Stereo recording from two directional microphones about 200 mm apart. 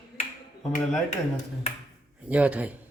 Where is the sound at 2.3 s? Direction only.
5° right (ahead or behind).